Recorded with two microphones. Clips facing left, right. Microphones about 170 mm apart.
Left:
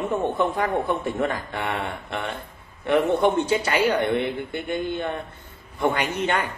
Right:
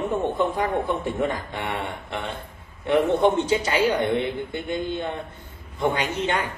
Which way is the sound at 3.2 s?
20° right (ahead or behind).